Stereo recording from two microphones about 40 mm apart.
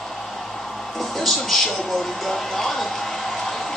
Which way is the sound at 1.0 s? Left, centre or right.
Centre.